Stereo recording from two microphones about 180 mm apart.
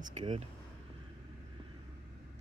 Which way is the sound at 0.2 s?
40° right (ahead or behind).